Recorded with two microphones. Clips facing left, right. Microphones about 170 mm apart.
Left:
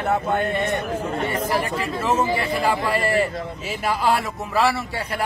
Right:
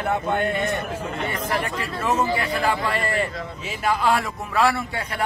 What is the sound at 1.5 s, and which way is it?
Speech, 10° left (ahead or behind).